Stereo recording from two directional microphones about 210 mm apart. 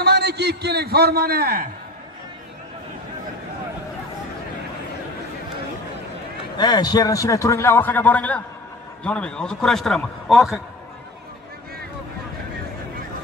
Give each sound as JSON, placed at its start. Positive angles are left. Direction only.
{"t": 0.0, "sound": "a man's voice", "side_deg": -50}
{"t": 6.5, "sound": "a man's voice", "side_deg": 20}